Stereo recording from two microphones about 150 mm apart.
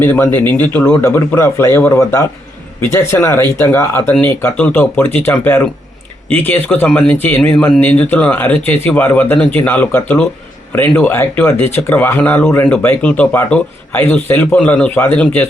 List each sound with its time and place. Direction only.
0.0 s speech: 15° left (ahead or behind)